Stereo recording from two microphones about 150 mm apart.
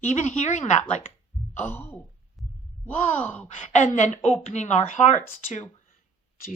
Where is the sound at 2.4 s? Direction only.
Centre (ahead or behind).